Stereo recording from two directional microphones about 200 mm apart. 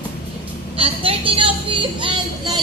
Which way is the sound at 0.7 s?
25° right (ahead or behind).